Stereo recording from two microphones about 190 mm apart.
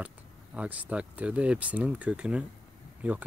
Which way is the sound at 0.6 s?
10° right (ahead or behind).